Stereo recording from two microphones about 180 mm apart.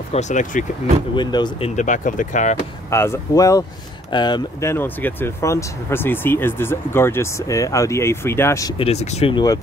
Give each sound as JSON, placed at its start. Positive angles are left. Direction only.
{"t": 0.1, "sound": "speech", "side_deg": 40}
{"t": 1.1, "sound": "speech", "side_deg": 25}
{"t": 1.8, "sound": "speech", "side_deg": 45}
{"t": 2.9, "sound": "speech", "side_deg": 15}
{"t": 8.7, "sound": "speech", "side_deg": 35}